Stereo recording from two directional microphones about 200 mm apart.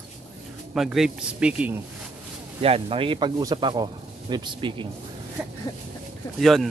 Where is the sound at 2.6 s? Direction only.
30° right (ahead or behind).